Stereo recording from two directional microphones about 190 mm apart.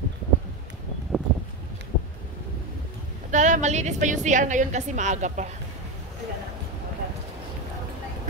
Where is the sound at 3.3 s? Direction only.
40° right (ahead or behind).